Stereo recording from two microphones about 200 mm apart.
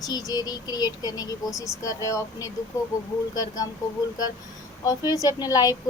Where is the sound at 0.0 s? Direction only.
20° left (ahead or behind).